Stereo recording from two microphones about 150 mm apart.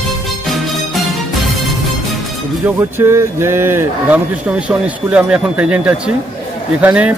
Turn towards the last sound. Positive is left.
turn(degrees=-10)  # may be behind; listen again after turning